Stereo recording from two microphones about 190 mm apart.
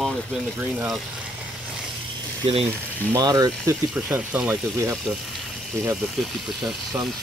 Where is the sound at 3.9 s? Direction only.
5° right (ahead or behind).